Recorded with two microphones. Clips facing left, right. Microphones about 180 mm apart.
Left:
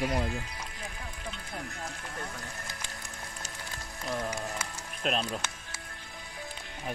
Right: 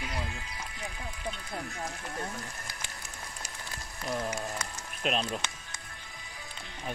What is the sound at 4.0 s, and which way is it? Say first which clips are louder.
Speech: right 1 dB; centre (ahead or behind).